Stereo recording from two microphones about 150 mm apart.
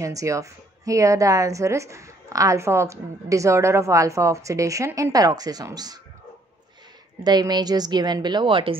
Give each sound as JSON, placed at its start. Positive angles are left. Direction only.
{"t": 0.0, "sound": "a woman's voice", "side_deg": -20}
{"t": 7.2, "sound": "a woman's voice", "side_deg": -30}